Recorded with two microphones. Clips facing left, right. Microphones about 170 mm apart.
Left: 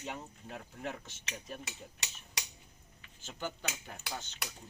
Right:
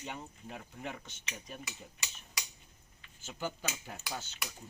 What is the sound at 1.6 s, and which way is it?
Speech, 70° left (ahead or behind).